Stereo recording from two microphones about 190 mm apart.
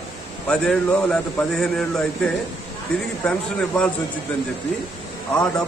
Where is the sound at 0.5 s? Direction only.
5° left (ahead or behind).